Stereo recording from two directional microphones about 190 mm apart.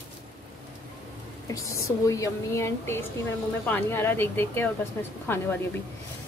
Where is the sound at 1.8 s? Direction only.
15° left (ahead or behind).